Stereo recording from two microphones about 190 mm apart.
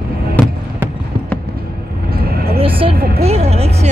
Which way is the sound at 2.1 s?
55° right (ahead or behind).